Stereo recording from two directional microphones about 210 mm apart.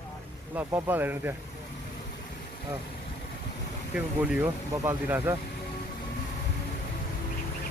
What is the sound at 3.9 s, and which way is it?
Speech, 5° right (ahead or behind).